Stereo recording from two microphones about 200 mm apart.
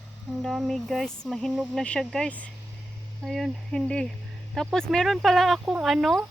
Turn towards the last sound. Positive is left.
turn(degrees=0)  # may be behind; listen again after turning